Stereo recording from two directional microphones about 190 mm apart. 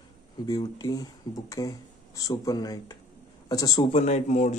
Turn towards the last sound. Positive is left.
turn(degrees=35)  # may be behind; listen again after turning